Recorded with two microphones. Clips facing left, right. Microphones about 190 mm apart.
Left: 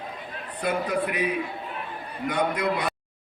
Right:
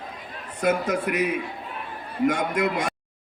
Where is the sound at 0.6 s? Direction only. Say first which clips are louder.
Right 3 dB; 45° right (ahead or behind).